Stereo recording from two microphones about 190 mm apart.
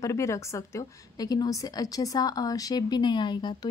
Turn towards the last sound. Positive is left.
turn(degrees=25)  # may be behind; listen again after turning